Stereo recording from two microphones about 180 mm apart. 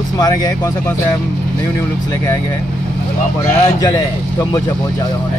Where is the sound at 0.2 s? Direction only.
20° left (ahead or behind).